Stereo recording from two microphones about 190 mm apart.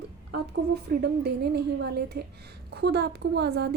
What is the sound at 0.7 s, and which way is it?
A woman's voice, 55° right (ahead or behind).